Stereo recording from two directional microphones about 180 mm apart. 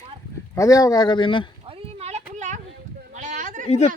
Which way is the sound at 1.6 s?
35° right (ahead or behind).